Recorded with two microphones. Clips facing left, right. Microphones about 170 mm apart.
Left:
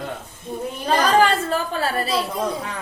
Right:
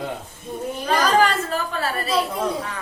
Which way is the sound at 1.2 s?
30° left (ahead or behind).